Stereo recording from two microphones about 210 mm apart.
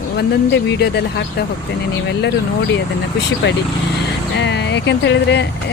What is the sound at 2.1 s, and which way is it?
Speech, 55° left (ahead or behind).